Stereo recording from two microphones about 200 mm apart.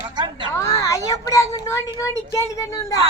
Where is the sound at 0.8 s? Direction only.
15° left (ahead or behind).